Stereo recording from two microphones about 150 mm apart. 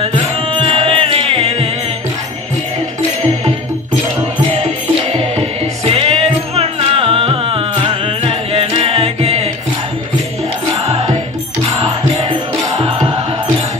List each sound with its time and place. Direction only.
0.0 s music: 40° right (ahead or behind)
4.2 s music: 45° right (ahead or behind)
10.9 s music: 45° right (ahead or behind)